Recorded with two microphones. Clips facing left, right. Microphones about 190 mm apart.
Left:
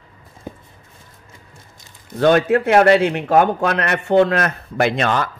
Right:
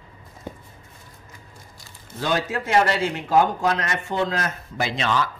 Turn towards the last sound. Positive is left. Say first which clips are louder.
# left 6 dB
turn(degrees=55)  # may be behind; listen again after turning